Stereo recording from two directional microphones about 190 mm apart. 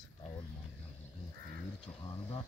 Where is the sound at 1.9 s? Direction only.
25° left (ahead or behind).